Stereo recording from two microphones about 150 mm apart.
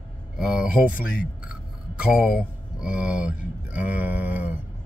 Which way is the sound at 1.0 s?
70° left (ahead or behind).